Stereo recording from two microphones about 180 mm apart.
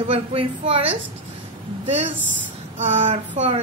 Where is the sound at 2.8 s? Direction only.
35° right (ahead or behind).